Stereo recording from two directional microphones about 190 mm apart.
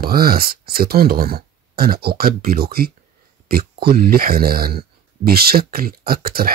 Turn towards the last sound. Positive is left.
turn(degrees=-55)  # may be behind; listen again after turning